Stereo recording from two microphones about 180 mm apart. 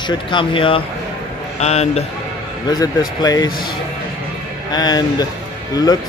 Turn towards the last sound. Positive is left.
turn(degrees=20)  # may be behind; listen again after turning